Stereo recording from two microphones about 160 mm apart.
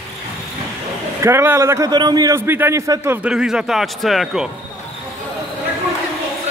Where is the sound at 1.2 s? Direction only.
15° right (ahead or behind).